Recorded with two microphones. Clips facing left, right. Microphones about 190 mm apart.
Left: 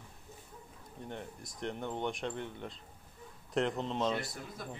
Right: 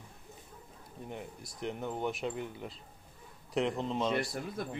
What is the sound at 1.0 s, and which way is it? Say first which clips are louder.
Speech: right 1 dB; 5° right (ahead or behind).